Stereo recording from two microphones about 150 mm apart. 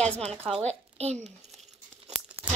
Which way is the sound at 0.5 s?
45° right (ahead or behind).